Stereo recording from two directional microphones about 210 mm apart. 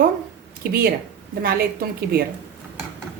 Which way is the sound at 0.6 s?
45° right (ahead or behind).